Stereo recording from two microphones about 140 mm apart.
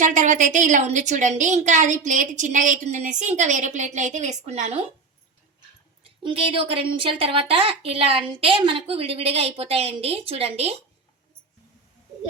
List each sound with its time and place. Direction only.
0.0 s a woman's voice: 60° right (ahead or behind)
6.2 s a woman's voice: 40° right (ahead or behind)